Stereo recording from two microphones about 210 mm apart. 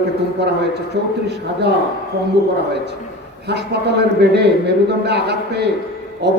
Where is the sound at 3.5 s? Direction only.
55° right (ahead or behind).